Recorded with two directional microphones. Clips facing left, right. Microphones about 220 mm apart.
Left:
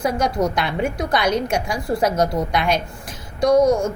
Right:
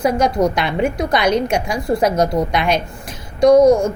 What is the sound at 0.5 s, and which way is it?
A woman's voice, 20° right (ahead or behind).